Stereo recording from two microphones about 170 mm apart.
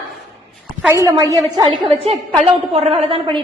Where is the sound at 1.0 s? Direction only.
20° right (ahead or behind).